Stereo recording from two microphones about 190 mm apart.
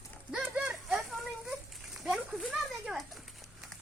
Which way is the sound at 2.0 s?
Centre (ahead or behind).